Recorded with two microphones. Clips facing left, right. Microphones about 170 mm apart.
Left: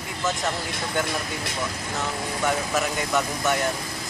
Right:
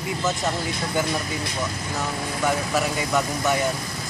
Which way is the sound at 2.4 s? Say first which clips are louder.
Right 2 dB; centre (ahead or behind).